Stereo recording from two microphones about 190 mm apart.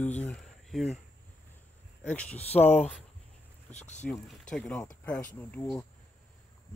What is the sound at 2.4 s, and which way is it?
Speech, 35° left (ahead or behind).